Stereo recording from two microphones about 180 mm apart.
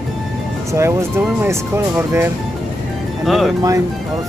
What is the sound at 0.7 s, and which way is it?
Speech, 15° right (ahead or behind).